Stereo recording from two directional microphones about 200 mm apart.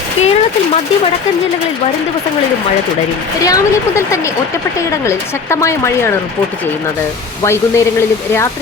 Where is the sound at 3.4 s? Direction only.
15° left (ahead or behind).